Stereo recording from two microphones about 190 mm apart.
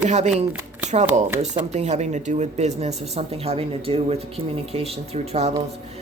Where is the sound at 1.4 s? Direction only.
35° right (ahead or behind).